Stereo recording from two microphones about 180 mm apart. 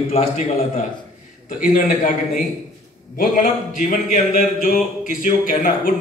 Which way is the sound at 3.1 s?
45° left (ahead or behind).